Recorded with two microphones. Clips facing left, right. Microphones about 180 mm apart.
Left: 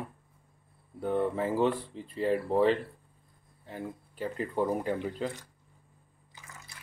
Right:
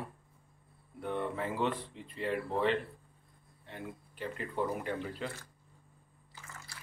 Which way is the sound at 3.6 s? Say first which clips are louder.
Left 5 dB; 40° left (ahead or behind).